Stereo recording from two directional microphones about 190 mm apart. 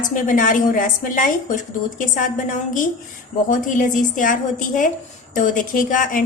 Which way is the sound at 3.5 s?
45° left (ahead or behind).